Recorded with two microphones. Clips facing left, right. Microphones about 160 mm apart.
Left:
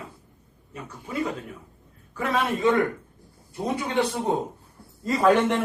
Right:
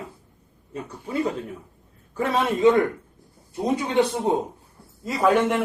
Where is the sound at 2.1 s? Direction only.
30° right (ahead or behind).